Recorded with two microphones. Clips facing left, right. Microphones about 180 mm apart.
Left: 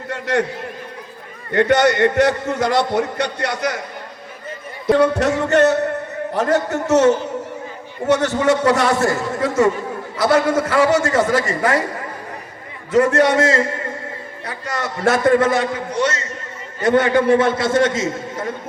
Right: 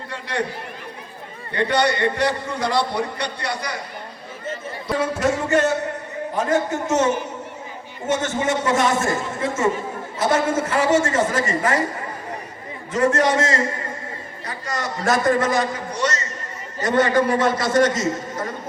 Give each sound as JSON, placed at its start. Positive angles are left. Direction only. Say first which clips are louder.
{"t": 0.1, "sound": "a man's voice", "louder": "left 7 dB", "side_deg": 50}
{"t": 1.5, "sound": "a man's voice", "louder": "left 6 dB", "side_deg": 50}
{"t": 4.9, "sound": "a man's voice", "louder": "left 6 dB", "side_deg": 70}
{"t": 12.9, "sound": "a man's voice", "louder": "left 4 dB", "side_deg": 65}